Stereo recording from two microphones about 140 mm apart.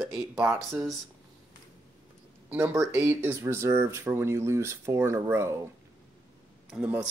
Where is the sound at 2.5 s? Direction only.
10° right (ahead or behind).